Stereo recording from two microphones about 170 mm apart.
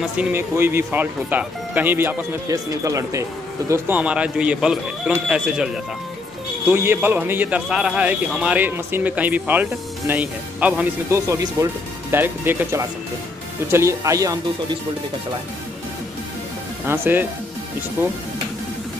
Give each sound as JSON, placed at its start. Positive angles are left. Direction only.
{"t": 0.2, "sound": "a man's voice", "side_deg": -15}
{"t": 6.7, "sound": "a man's voice", "side_deg": -15}
{"t": 16.8, "sound": "a man's voice", "side_deg": -15}